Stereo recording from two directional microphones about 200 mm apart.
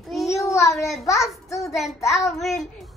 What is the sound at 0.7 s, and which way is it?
A child's voice, centre (ahead or behind).